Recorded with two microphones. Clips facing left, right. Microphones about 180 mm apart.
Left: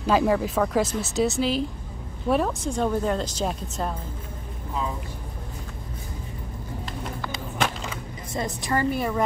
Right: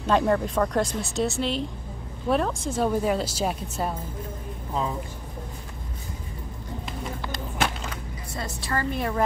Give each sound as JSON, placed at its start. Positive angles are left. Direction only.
{"t": 0.0, "sound": "speech", "side_deg": 5}
{"t": 6.9, "sound": "a sound", "side_deg": 0}
{"t": 8.3, "sound": "a woman's voice", "side_deg": 20}
{"t": 8.9, "sound": "speech", "side_deg": 0}